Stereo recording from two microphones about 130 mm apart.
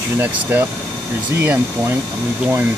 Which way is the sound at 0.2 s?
15° right (ahead or behind).